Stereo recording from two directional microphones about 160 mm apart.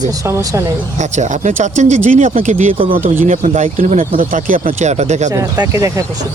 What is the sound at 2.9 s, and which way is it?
Speech, 60° right (ahead or behind).